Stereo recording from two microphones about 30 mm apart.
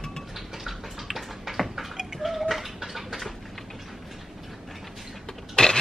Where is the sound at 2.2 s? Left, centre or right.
Centre.